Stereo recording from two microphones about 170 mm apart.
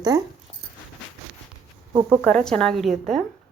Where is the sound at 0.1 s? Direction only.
20° right (ahead or behind).